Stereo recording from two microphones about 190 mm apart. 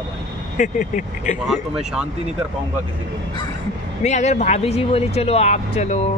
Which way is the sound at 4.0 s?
35° left (ahead or behind).